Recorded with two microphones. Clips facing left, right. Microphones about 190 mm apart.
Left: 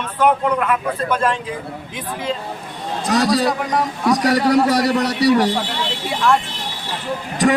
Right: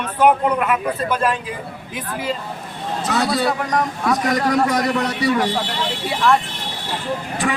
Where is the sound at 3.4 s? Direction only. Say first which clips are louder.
Left 1 dB; 10° left (ahead or behind).